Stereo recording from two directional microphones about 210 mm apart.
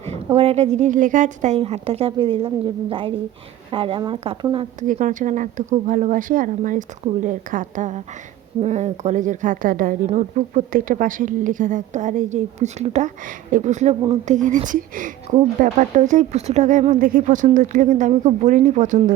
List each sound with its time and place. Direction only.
0.3 s a woman's voice: 30° right (ahead or behind)